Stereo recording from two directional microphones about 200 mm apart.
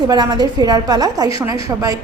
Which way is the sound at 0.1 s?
20° right (ahead or behind).